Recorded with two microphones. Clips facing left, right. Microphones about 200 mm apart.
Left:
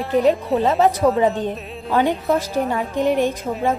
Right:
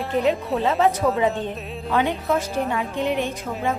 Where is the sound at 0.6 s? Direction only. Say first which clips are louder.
Left 2 dB; 40° left (ahead or behind).